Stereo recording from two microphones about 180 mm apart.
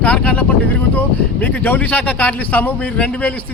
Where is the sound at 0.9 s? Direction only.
10° left (ahead or behind).